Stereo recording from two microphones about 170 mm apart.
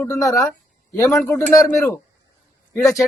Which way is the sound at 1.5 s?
20° left (ahead or behind).